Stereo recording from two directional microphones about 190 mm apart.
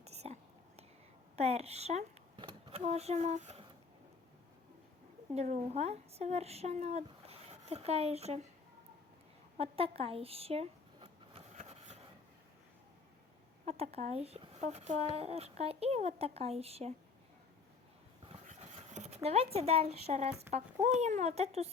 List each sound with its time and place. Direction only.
0.0 s whispering: 35° right (ahead or behind)
1.4 s speech: 35° right (ahead or behind)
5.3 s speech: 35° right (ahead or behind)
9.6 s a sound: 30° right (ahead or behind)
13.7 s speech: 30° right (ahead or behind)
18.3 s a sound: 35° right (ahead or behind)
20.8 s speech: 35° right (ahead or behind)